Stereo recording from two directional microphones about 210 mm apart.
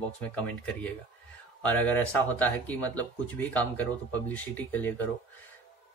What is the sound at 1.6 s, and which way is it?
Speech, 5° left (ahead or behind).